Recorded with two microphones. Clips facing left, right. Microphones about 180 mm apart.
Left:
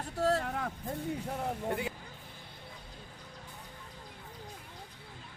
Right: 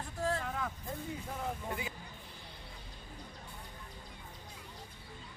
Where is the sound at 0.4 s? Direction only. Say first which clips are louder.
Left 2 dB; 50° left (ahead or behind).